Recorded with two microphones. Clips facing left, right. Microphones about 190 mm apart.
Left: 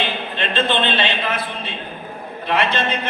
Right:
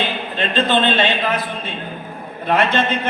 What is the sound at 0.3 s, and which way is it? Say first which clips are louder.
A man's voice: right 3 dB; 40° right (ahead or behind).